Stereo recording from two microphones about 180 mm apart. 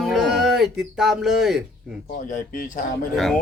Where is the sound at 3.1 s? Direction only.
Centre (ahead or behind).